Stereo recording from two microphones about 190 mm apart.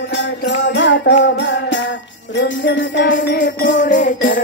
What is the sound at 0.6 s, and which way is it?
Jingle bell, 70° left (ahead or behind).